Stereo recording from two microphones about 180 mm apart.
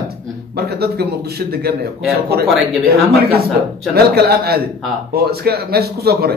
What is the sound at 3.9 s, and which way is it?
A man's voice, 60° right (ahead or behind).